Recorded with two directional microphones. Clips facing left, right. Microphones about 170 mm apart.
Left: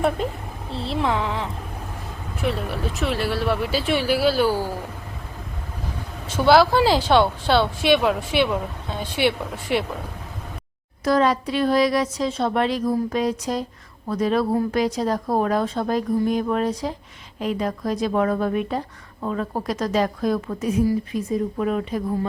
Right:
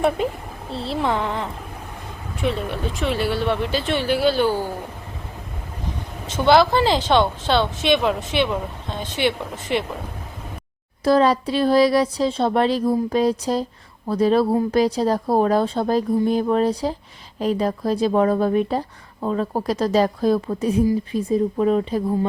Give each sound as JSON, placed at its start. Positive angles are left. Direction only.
{"t": 0.7, "sound": "speech", "side_deg": 0}
{"t": 6.2, "sound": "speech", "side_deg": 10}
{"t": 11.0, "sound": "speech", "side_deg": -30}